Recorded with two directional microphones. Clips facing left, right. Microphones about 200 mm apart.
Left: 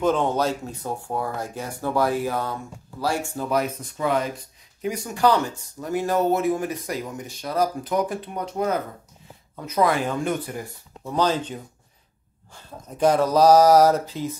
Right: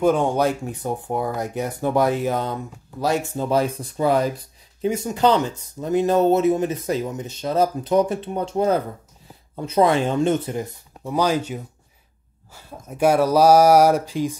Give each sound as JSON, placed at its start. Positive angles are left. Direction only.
{"t": 0.0, "sound": "speech", "side_deg": -10}
{"t": 4.8, "sound": "speech", "side_deg": -25}
{"t": 11.1, "sound": "a sound", "side_deg": -10}